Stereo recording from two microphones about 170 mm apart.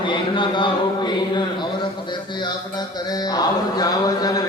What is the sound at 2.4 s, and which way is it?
Mantra, 25° left (ahead or behind).